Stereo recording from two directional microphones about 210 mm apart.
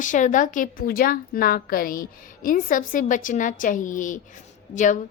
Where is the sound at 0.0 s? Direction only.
35° left (ahead or behind).